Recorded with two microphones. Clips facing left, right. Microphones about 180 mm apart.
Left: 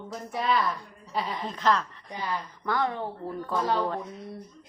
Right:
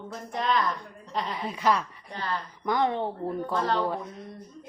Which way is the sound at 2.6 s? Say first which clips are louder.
Right 3 dB; 20° right (ahead or behind).